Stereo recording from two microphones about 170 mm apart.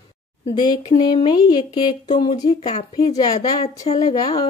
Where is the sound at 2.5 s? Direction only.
35° left (ahead or behind).